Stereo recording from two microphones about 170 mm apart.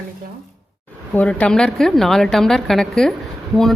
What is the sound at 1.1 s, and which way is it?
A woman's voice, 10° left (ahead or behind).